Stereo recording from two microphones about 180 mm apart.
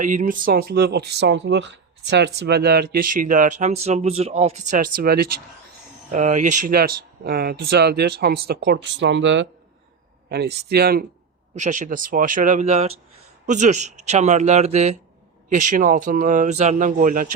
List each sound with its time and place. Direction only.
0.0 s speech: 45° right (ahead or behind); by 9.5 s 90° right
10.2 s speech: 65° right (ahead or behind)
11.5 s speech: 45° right (ahead or behind)